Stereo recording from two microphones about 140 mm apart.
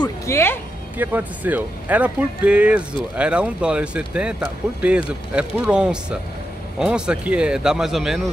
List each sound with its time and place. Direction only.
0.3 s speech: 15° left (ahead or behind)
0.9 s speech: 10° right (ahead or behind)